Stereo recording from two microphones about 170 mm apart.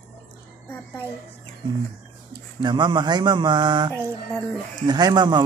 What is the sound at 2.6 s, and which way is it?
Speech, 25° right (ahead or behind).